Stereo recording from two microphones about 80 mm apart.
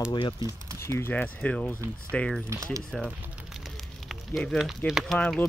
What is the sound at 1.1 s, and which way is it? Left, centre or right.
Speech, centre.